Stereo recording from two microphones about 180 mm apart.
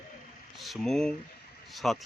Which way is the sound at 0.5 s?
Centre (ahead or behind).